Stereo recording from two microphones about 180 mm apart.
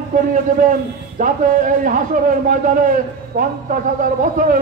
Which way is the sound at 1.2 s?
50° right (ahead or behind).